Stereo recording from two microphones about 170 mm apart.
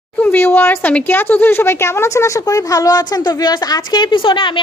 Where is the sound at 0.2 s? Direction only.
10° left (ahead or behind).